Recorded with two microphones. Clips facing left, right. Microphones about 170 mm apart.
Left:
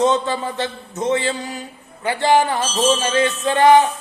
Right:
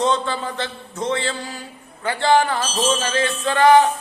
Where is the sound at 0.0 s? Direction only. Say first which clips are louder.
Left 3 dB; 20° left (ahead or behind).